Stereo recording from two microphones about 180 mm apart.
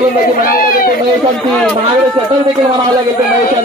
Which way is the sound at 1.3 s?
5° left (ahead or behind).